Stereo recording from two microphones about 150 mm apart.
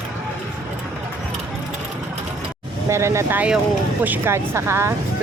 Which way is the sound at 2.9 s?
20° right (ahead or behind).